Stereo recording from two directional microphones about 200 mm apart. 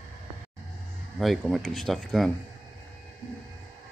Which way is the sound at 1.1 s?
Centre (ahead or behind).